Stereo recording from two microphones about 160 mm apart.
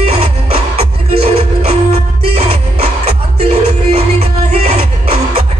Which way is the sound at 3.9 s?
40° right (ahead or behind).